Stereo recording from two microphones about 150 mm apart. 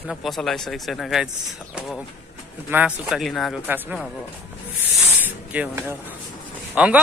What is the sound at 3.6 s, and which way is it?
Speech, 10° right (ahead or behind).